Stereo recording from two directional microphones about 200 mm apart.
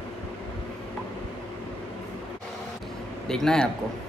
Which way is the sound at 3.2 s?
5° left (ahead or behind).